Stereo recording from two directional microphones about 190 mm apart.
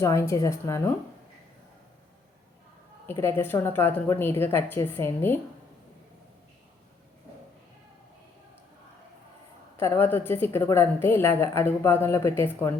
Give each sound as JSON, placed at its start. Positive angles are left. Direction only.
{"t": 0.0, "sound": "a woman's voice", "side_deg": 15}
{"t": 3.1, "sound": "a woman's voice", "side_deg": 10}
{"t": 9.7, "sound": "a woman's voice", "side_deg": 10}